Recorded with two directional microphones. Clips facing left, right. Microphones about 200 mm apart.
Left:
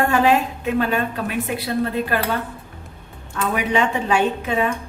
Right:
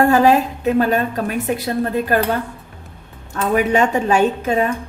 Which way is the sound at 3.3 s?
45° right (ahead or behind).